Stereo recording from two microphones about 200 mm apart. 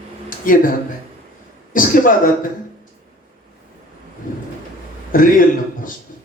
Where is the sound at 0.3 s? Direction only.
45° left (ahead or behind).